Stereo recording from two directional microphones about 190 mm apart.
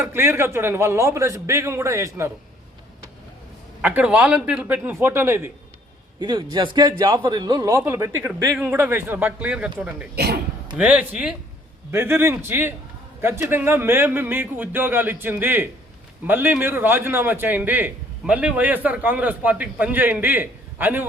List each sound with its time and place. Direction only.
0.0 s a man's voice: 15° right (ahead or behind)
3.8 s a man's voice: 10° right (ahead or behind)
6.1 s a man's voice: 25° right (ahead or behind); by 10.1 s 5° right (ahead or behind)
10.2 s speech: 55° right (ahead or behind)
10.8 s a man's voice: 5° right (ahead or behind)